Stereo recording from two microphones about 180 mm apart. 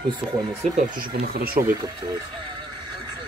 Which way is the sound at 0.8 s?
55° right (ahead or behind).